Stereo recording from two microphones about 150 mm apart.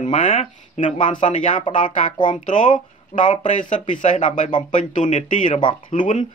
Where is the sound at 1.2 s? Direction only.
55° left (ahead or behind).